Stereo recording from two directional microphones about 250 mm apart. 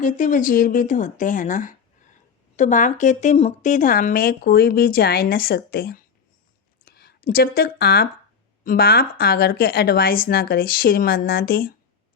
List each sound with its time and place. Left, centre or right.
0.0 s speech: left